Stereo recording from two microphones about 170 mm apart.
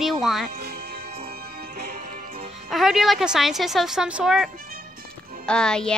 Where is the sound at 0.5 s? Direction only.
65° right (ahead or behind).